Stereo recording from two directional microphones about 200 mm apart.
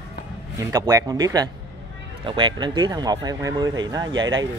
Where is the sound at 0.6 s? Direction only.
15° right (ahead or behind).